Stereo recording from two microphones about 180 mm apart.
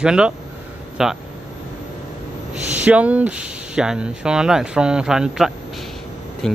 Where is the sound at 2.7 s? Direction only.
10° right (ahead or behind).